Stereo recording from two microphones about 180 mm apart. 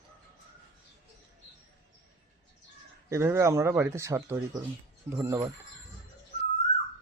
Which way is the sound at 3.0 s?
15° right (ahead or behind).